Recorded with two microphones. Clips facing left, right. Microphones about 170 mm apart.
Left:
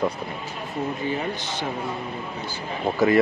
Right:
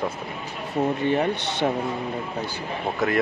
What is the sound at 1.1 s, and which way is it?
Speech, 70° right (ahead or behind).